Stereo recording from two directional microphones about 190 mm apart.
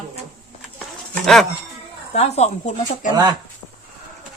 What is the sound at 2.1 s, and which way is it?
Speech, 35° left (ahead or behind).